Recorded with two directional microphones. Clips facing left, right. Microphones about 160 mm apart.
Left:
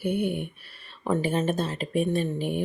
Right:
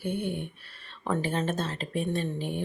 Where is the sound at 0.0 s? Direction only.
10° left (ahead or behind).